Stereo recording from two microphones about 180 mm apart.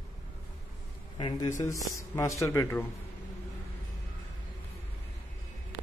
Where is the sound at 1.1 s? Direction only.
25° left (ahead or behind).